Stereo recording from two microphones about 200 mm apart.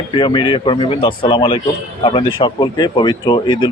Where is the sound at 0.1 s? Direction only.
25° left (ahead or behind).